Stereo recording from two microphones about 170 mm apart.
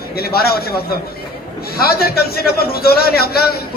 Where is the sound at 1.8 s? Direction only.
65° left (ahead or behind).